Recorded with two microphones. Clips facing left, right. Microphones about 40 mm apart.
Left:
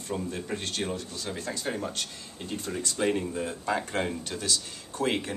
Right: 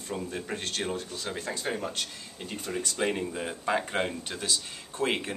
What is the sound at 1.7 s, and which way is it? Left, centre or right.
Speech, right.